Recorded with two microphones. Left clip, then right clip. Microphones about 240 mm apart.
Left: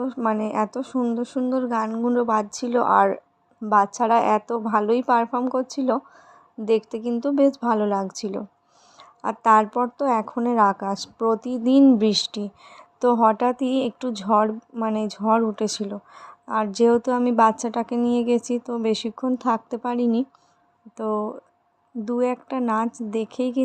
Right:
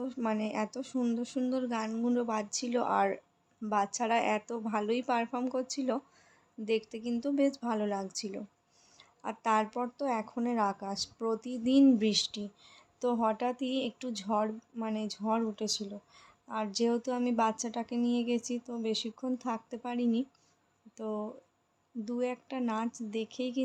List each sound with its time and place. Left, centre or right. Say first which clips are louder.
0.0 s a woman's voice: left 10 dB; centre